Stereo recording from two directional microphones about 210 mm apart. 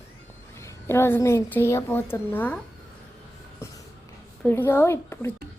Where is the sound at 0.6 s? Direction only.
10° left (ahead or behind).